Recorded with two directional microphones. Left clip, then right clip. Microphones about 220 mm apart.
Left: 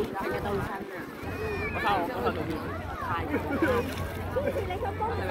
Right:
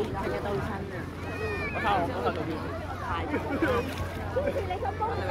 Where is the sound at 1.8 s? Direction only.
40° left (ahead or behind).